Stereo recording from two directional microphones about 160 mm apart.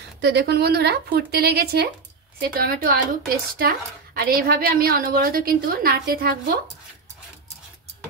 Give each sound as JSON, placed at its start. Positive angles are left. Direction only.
{"t": 0.2, "sound": "speech", "side_deg": -90}
{"t": 2.4, "sound": "a woman's voice", "side_deg": -65}